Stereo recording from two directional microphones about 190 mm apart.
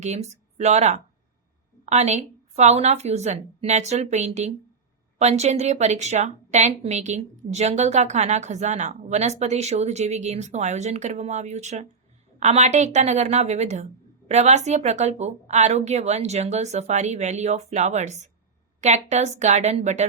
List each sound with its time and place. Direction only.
0.0 s a woman's voice: 35° right (ahead or behind)